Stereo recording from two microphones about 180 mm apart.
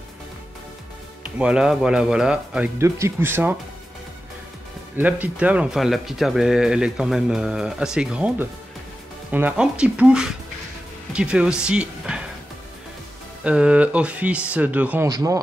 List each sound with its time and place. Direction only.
1.2 s speech: 5° right (ahead or behind)
4.9 s speech: 10° right (ahead or behind)
13.4 s speech: 5° right (ahead or behind)
15.0 s a man's voice: 20° right (ahead or behind)